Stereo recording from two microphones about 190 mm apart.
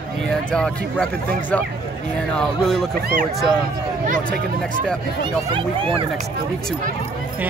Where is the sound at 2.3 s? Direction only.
Centre (ahead or behind).